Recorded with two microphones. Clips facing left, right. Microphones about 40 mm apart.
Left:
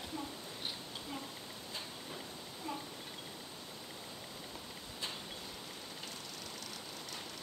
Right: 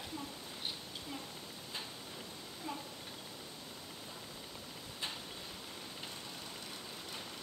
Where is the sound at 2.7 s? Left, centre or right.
Centre.